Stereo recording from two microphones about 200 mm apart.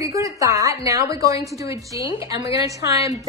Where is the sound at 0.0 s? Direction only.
15° right (ahead or behind).